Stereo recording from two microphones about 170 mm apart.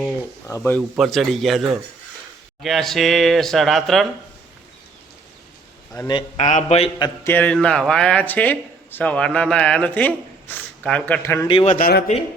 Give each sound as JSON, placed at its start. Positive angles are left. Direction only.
{"t": 0.0, "sound": "speech", "side_deg": 15}
{"t": 0.9, "sound": "speech", "side_deg": 0}
{"t": 6.1, "sound": "a man's voice", "side_deg": 30}
{"t": 6.4, "sound": "a man's voice", "side_deg": 45}
{"t": 7.3, "sound": "speech", "side_deg": 10}
{"t": 11.4, "sound": "a man's voice", "side_deg": 30}
{"t": 11.7, "sound": "a man's voice", "side_deg": 60}